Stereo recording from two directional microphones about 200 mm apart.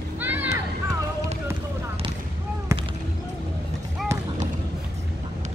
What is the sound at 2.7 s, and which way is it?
Basketball bounce, 15° right (ahead or behind).